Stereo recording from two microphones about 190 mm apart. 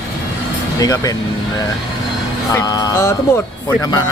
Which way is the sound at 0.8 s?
20° left (ahead or behind).